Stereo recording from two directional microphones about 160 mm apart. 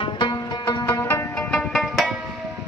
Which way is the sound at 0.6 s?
20° left (ahead or behind).